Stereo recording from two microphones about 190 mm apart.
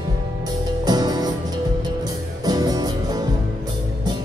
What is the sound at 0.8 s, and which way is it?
Music, 20° right (ahead or behind).